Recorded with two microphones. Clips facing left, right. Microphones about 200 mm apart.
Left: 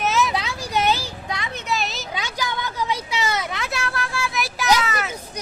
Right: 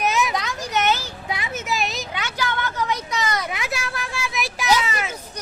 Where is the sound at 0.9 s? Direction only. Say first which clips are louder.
Even; 10° left (ahead or behind).